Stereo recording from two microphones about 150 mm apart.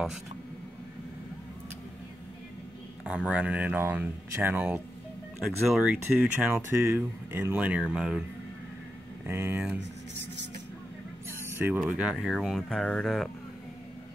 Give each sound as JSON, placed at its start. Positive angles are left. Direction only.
{"t": 3.0, "sound": "speech", "side_deg": -5}
{"t": 6.5, "sound": "speech", "side_deg": -15}
{"t": 9.2, "sound": "speech", "side_deg": -15}
{"t": 11.2, "sound": "a sound", "side_deg": -15}
{"t": 12.0, "sound": "speech", "side_deg": -5}